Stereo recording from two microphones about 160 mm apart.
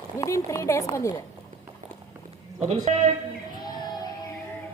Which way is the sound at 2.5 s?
45° right (ahead or behind).